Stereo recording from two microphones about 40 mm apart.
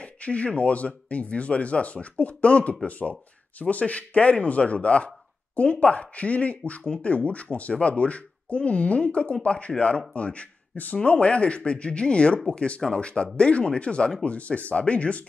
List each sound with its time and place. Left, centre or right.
0.0 s speech: left
2.9 s speech: left